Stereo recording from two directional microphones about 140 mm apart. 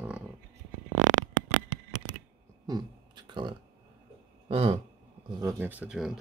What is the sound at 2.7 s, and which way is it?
Speech, 30° right (ahead or behind).